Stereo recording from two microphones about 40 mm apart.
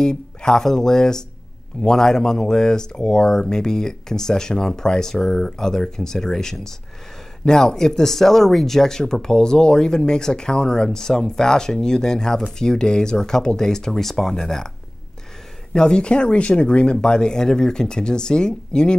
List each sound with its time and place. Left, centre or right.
0.0 s speech: centre
15.7 s speech: left